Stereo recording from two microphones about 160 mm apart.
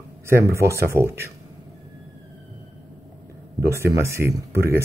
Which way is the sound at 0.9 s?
15° right (ahead or behind).